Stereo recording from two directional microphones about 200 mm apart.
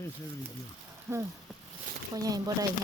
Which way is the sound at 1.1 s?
15° right (ahead or behind).